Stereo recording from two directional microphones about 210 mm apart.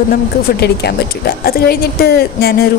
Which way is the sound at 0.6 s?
50° left (ahead or behind).